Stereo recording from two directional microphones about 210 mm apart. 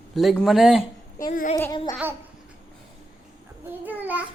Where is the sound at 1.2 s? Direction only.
35° left (ahead or behind).